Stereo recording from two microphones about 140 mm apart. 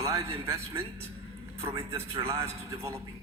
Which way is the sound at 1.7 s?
40° right (ahead or behind).